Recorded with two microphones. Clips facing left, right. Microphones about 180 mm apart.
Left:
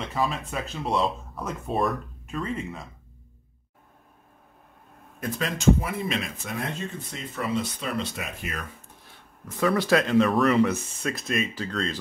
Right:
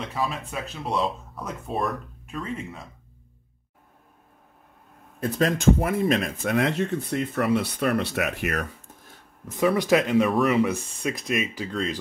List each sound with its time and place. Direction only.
0.0 s speech: centre (ahead or behind)
5.6 s speech: 50° right (ahead or behind)
6.6 s speech: 75° right (ahead or behind)
9.6 s speech: 15° right (ahead or behind)